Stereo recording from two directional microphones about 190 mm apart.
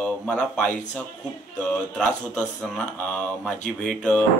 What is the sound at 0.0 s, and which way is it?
Speech, 5° left (ahead or behind).